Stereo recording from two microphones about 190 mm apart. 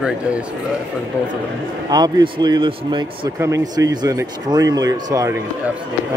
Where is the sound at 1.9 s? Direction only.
20° right (ahead or behind).